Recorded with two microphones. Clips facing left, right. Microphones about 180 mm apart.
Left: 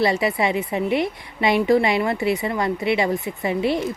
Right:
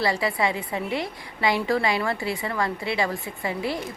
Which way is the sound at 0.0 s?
20° left (ahead or behind).